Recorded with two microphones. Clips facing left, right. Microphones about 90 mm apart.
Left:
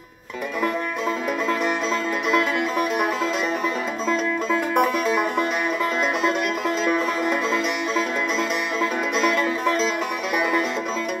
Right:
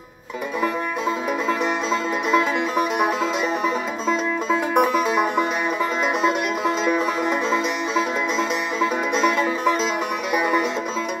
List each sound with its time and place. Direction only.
2.3 s music: 5° right (ahead or behind)
4.5 s music: 10° right (ahead or behind)
6.8 s music: 5° right (ahead or behind)